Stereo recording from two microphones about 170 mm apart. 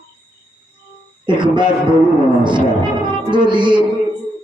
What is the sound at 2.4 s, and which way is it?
Music, 25° right (ahead or behind).